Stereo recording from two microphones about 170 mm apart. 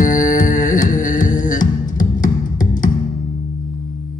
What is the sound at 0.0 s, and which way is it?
Music, 50° left (ahead or behind).